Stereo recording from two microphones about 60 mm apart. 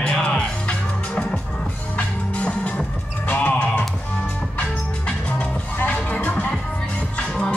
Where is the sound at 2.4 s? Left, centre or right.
Centre.